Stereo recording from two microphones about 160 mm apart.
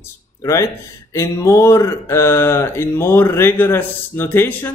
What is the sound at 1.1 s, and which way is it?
Speech, 20° left (ahead or behind).